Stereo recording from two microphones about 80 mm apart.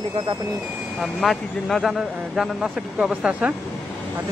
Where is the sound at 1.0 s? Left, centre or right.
Centre.